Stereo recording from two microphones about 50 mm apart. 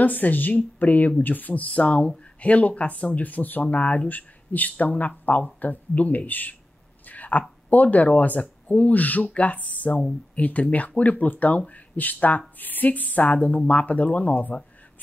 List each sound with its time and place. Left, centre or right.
0.0 s speech: left